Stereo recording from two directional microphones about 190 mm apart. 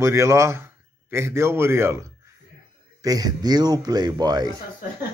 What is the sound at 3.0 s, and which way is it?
Speech, 20° right (ahead or behind).